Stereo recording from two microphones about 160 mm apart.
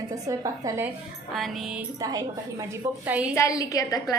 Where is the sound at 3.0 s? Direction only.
10° right (ahead or behind).